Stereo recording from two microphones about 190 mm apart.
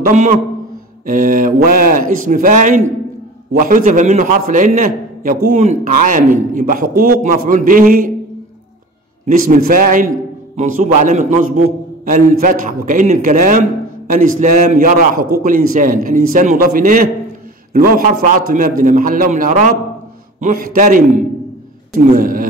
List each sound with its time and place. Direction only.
0.0 s a man's voice: 45° right (ahead or behind)
9.2 s a man's voice: 45° right (ahead or behind)